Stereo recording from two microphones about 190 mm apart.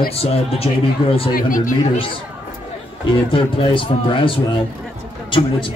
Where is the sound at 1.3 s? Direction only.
45° left (ahead or behind).